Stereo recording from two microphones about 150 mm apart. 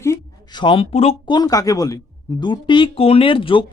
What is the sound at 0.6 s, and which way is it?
Speech, 35° left (ahead or behind).